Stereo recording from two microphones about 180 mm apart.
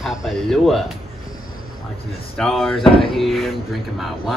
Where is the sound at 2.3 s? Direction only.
5° left (ahead or behind).